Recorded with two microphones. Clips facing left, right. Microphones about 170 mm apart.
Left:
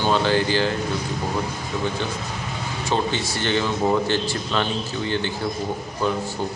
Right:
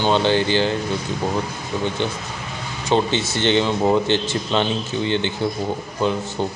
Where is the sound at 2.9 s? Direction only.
25° right (ahead or behind).